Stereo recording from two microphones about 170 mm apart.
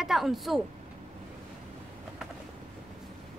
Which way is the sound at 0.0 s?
Centre (ahead or behind).